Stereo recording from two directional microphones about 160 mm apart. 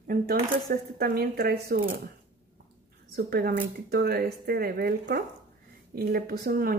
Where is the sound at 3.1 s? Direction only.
75° right (ahead or behind).